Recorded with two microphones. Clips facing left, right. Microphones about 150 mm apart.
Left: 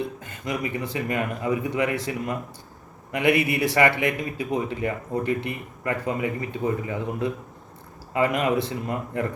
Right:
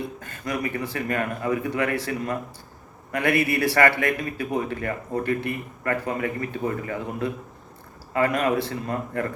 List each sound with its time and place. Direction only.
0.2 s a man's voice: 20° left (ahead or behind)